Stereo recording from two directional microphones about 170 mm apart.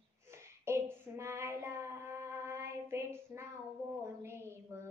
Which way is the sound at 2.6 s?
15° right (ahead or behind).